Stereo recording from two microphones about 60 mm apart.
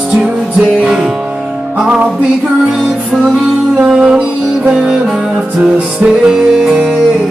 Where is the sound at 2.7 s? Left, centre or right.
Centre.